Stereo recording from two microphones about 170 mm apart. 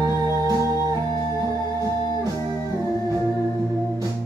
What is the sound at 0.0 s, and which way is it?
Music, 20° right (ahead or behind).